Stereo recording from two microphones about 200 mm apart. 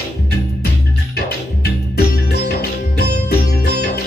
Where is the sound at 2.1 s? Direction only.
55° left (ahead or behind).